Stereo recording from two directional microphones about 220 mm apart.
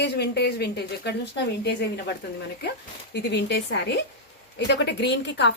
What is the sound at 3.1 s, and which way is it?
Speech, 50° left (ahead or behind).